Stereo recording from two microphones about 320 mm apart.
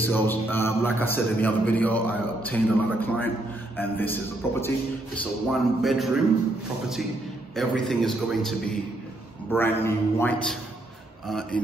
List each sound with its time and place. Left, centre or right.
0.0 s a man's voice: centre
7.5 s a man's voice: centre
9.5 s a man's voice: centre